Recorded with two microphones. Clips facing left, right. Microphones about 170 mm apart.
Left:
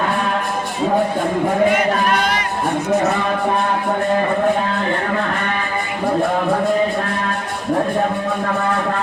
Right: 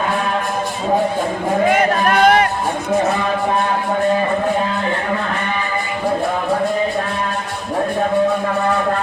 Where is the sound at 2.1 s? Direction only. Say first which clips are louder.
Right 6 dB; 55° right (ahead or behind).